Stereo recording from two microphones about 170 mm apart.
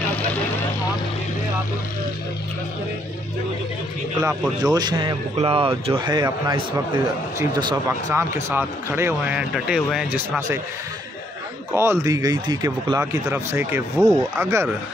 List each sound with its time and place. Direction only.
4.2 s speech: 20° right (ahead or behind)
8.1 s speech: 15° right (ahead or behind)
11.7 s speech: 15° right (ahead or behind)